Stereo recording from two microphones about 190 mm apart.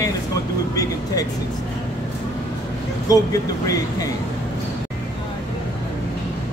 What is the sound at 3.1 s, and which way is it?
Speech, 20° left (ahead or behind).